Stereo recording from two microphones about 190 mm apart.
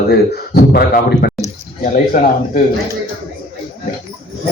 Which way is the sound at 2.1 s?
40° left (ahead or behind).